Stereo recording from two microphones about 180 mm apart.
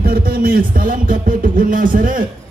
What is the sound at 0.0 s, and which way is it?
A man's voice, 55° right (ahead or behind).